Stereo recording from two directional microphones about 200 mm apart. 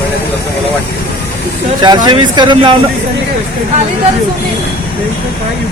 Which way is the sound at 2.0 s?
20° right (ahead or behind).